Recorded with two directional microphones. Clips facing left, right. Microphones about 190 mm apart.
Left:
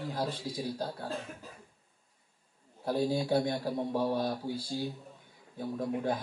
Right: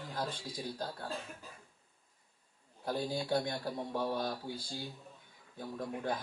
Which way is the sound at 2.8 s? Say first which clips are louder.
Left 6 dB; 10° left (ahead or behind).